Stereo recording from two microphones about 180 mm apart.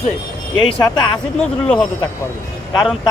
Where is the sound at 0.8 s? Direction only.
25° left (ahead or behind).